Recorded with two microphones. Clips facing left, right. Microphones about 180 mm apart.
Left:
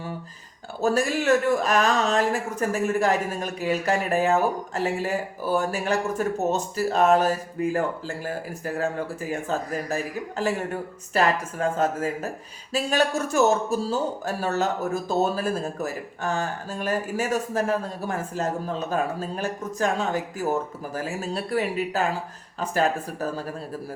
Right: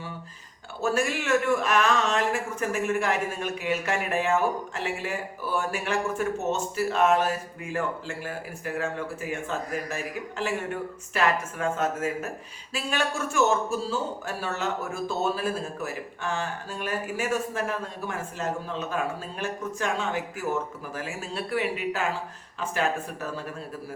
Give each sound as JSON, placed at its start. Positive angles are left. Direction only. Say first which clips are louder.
{"t": 0.8, "sound": "speech", "louder": "left 4 dB", "side_deg": 35}